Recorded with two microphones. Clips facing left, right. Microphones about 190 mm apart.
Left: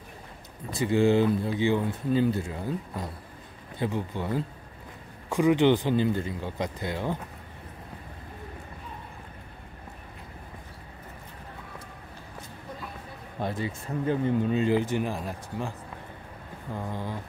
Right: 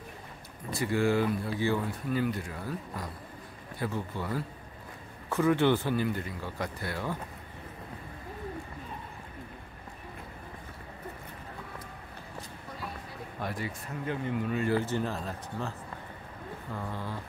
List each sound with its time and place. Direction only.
0.7 s speech: 20° left (ahead or behind)
13.4 s speech: 25° left (ahead or behind)
16.7 s speech: 15° left (ahead or behind)